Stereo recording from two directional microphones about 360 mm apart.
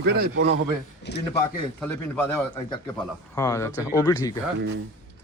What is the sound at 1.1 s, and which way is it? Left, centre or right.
Speech, left.